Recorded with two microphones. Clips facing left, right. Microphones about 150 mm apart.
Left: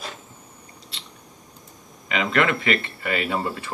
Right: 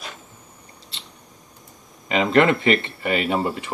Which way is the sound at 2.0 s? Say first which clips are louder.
Right 5 dB; 30° right (ahead or behind).